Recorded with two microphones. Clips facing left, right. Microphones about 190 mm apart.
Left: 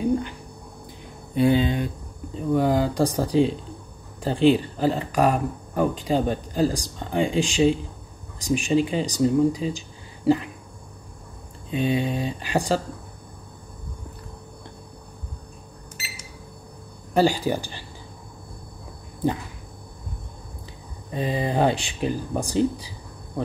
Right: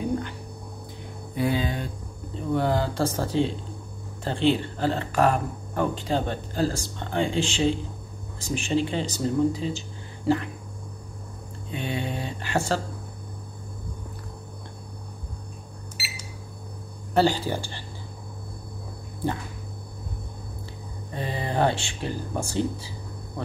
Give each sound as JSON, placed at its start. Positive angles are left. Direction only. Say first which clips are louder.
{"t": 1.3, "sound": "speech", "louder": "left 6 dB", "side_deg": 25}
{"t": 2.5, "sound": "speech", "louder": "left 4 dB", "side_deg": 15}
{"t": 11.7, "sound": "speech", "louder": "left 7 dB", "side_deg": 15}
{"t": 17.1, "sound": "speech", "louder": "left 2 dB", "side_deg": 15}
{"t": 21.1, "sound": "speech", "louder": "left 5 dB", "side_deg": 15}